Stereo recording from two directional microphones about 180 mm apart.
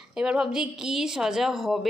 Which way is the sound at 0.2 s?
5° right (ahead or behind).